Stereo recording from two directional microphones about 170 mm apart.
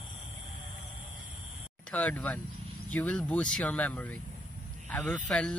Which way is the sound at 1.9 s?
10° left (ahead or behind).